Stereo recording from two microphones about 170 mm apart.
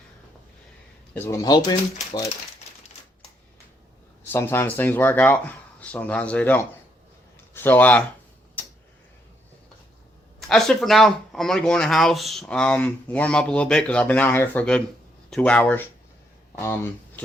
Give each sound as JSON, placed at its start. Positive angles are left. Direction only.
{"t": 1.1, "sound": "speech", "side_deg": 15}
{"t": 4.3, "sound": "speech", "side_deg": 15}
{"t": 8.6, "sound": "tick-tock", "side_deg": 10}
{"t": 10.5, "sound": "speech", "side_deg": 5}